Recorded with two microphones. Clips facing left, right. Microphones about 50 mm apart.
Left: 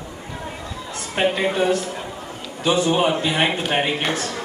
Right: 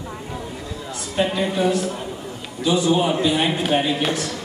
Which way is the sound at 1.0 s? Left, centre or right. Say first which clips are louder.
Left 1 dB; left.